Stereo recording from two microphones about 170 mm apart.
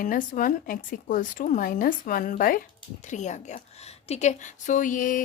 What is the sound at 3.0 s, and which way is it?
A woman's voice, 45° left (ahead or behind).